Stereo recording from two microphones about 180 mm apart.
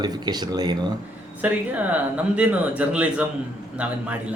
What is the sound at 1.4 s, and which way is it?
Speech, 10° right (ahead or behind).